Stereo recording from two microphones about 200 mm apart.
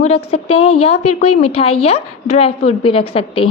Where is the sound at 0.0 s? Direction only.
30° left (ahead or behind).